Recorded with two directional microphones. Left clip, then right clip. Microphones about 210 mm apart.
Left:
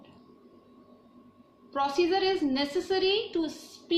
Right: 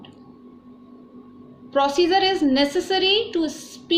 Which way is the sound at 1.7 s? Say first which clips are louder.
Right 8 dB; 35° right (ahead or behind).